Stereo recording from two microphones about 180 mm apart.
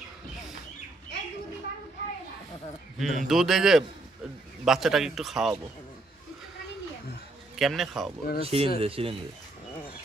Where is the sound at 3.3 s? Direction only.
Centre (ahead or behind).